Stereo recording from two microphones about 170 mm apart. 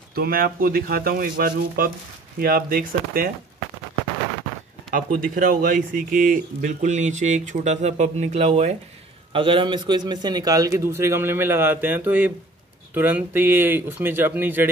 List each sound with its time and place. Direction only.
0.1 s speech: 60° right (ahead or behind)
4.9 s speech: 55° right (ahead or behind); by 14.7 s 10° right (ahead or behind)